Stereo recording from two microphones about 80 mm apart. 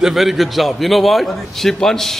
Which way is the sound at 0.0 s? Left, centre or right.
Centre.